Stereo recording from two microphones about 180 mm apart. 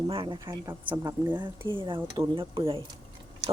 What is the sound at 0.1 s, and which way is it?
Speech, 25° right (ahead or behind).